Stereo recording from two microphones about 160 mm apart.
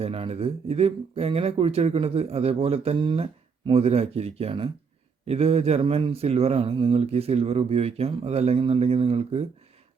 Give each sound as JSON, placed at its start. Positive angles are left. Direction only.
{"t": 0.0, "sound": "a man's voice", "side_deg": -35}